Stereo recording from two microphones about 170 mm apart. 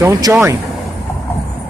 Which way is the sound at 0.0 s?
15° right (ahead or behind).